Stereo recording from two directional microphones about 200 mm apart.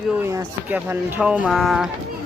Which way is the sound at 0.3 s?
10° right (ahead or behind).